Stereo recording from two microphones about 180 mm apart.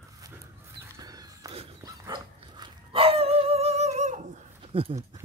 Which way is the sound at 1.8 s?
20° right (ahead or behind).